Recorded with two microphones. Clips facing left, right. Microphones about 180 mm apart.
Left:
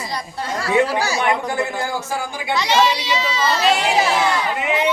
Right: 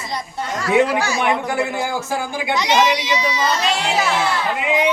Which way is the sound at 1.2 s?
10° right (ahead or behind).